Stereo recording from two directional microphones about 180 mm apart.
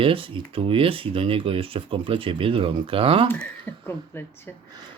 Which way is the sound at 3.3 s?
10° left (ahead or behind).